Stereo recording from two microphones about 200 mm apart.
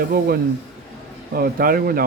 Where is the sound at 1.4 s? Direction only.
45° right (ahead or behind).